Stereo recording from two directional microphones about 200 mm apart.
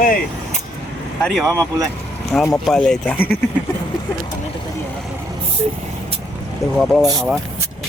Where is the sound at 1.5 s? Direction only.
15° right (ahead or behind).